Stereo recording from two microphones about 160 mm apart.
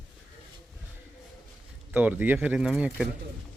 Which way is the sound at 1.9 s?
10° right (ahead or behind).